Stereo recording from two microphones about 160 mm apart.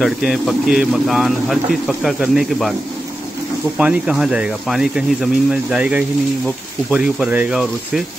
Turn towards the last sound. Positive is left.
turn(degrees=-5)  # may be behind; listen again after turning